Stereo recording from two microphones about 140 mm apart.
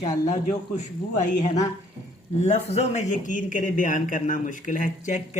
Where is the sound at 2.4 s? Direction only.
50° left (ahead or behind).